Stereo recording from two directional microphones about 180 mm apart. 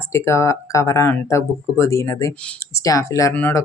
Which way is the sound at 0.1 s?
15° left (ahead or behind).